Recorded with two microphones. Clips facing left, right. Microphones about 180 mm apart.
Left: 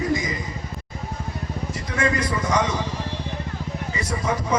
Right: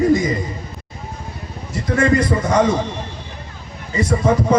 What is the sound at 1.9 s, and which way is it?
Speech, 45° right (ahead or behind).